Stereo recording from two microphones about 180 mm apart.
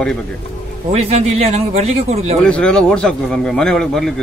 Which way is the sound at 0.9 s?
35° right (ahead or behind).